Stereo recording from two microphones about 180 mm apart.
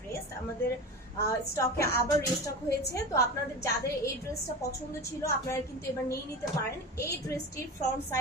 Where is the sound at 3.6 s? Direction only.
15° left (ahead or behind).